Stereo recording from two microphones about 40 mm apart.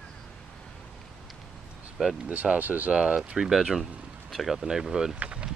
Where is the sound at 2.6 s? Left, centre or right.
Right.